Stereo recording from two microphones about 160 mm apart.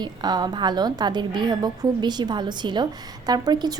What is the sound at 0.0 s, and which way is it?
A woman's voice, 25° right (ahead or behind).